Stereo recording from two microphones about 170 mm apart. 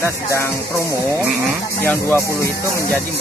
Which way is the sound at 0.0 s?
15° left (ahead or behind).